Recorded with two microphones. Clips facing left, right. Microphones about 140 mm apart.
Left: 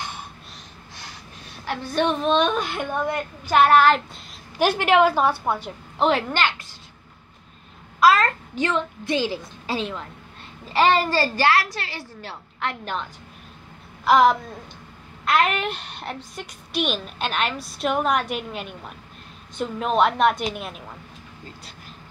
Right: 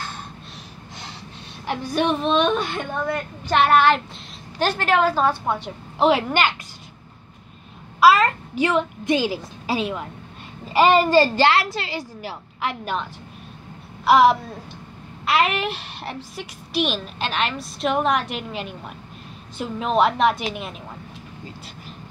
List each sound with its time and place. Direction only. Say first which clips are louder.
1.7 s a woman's voice: right 1 dB; 10° right (ahead or behind); by 3.5 s 15° left (ahead or behind)
3.5 s a woman's voice: left 1 dB; centre (ahead or behind)
4.6 s a woman's voice: left 2 dB; 15° left (ahead or behind)
5.5 s a woman's voice: even; centre (ahead or behind)
8.0 s a child's voice: right 2 dB; 10° right (ahead or behind)
14.0 s a woman's voice: right 2 dB; 5° right (ahead or behind)